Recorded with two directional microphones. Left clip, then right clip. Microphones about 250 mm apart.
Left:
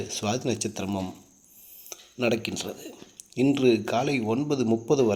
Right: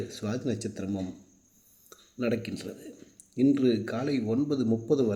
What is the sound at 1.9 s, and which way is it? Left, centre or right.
Dishes, left.